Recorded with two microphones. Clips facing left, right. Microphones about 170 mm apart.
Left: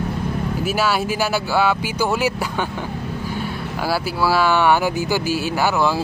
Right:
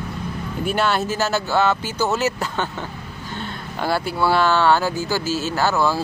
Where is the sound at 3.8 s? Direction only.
5° left (ahead or behind).